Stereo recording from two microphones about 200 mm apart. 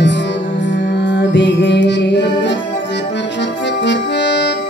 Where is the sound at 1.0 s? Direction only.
60° left (ahead or behind).